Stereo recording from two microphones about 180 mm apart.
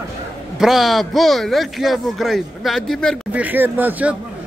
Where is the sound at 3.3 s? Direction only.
10° right (ahead or behind).